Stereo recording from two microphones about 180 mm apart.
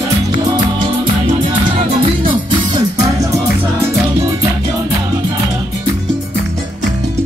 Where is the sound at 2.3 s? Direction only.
25° right (ahead or behind).